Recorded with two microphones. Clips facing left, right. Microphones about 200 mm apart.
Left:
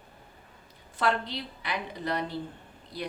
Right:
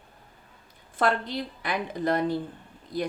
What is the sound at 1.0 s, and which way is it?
A woman's voice, 50° right (ahead or behind).